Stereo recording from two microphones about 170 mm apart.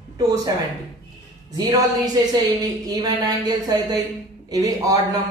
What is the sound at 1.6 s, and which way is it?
A woman's voice, 20° right (ahead or behind).